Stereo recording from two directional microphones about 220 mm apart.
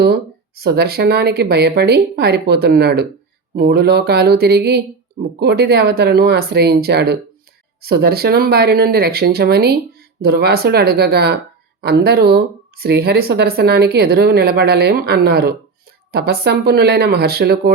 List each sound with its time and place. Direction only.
0.0 s a woman's voice: 45° right (ahead or behind)